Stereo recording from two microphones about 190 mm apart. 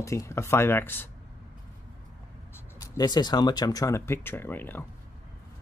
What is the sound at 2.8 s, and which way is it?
Speech, 20° left (ahead or behind).